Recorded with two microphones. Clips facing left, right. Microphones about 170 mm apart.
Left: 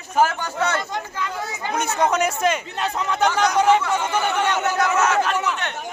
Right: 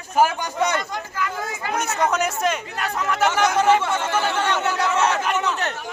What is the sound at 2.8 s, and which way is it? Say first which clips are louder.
Speech: left 1 dB; 20° left (ahead or behind).